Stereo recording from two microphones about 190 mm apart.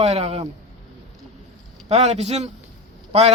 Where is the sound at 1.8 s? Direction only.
35° right (ahead or behind).